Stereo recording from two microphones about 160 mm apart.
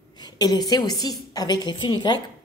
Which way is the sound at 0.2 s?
25° left (ahead or behind).